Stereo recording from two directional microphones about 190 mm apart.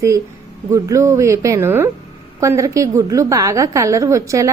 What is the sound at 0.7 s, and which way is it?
A woman's voice, 15° right (ahead or behind).